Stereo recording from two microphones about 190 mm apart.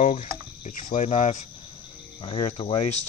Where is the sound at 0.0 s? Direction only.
40° left (ahead or behind).